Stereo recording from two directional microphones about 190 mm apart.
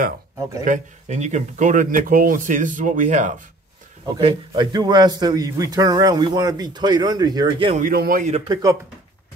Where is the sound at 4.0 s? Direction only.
25° right (ahead or behind).